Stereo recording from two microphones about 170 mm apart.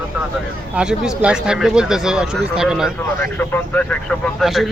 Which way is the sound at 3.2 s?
10° left (ahead or behind).